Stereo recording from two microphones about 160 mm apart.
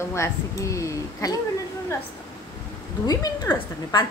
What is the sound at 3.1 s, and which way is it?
Speech, 20° left (ahead or behind).